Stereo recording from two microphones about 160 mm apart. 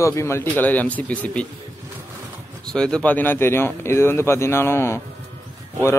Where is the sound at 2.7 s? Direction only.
5° left (ahead or behind).